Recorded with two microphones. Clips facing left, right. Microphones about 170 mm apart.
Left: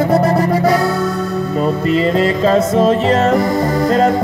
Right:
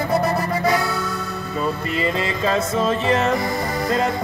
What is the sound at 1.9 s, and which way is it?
Music, 40° left (ahead or behind).